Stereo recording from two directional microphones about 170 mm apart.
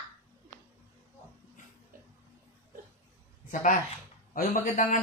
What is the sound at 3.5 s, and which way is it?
Speech, 50° left (ahead or behind).